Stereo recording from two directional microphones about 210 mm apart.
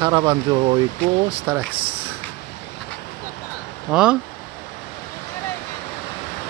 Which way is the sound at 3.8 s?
5° right (ahead or behind).